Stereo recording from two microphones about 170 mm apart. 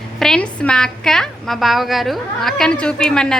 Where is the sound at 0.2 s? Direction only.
5° left (ahead or behind).